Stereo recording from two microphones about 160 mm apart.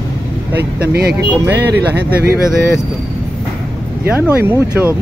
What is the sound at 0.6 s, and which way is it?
Speech, 80° right.